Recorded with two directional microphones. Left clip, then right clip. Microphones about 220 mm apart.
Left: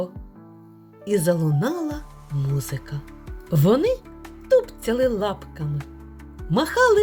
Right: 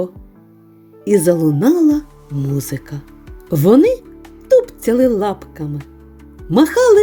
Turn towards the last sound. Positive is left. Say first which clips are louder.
# right 7 dB
turn(degrees=-40)  # may be behind; listen again after turning